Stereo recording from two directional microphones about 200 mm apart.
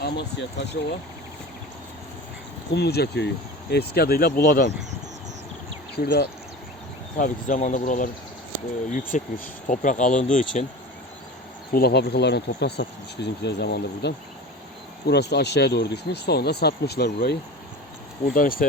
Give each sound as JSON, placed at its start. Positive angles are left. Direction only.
{"t": 0.0, "sound": "speech", "side_deg": 55}
{"t": 2.7, "sound": "speech", "side_deg": 55}
{"t": 6.0, "sound": "speech", "side_deg": 50}
{"t": 7.2, "sound": "speech", "side_deg": 40}
{"t": 11.7, "sound": "speech", "side_deg": 50}